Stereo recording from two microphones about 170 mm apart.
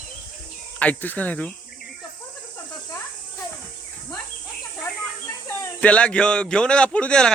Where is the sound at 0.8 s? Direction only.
10° left (ahead or behind).